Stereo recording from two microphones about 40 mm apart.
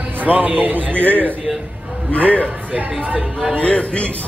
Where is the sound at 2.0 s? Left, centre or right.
Left.